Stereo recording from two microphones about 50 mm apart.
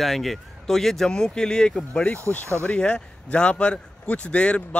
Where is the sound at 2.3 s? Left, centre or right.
Left.